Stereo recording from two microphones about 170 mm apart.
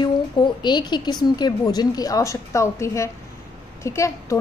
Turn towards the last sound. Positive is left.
turn(degrees=15)  # may be behind; listen again after turning